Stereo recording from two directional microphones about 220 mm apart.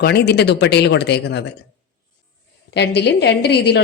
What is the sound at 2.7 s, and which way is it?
Speech, 50° left (ahead or behind).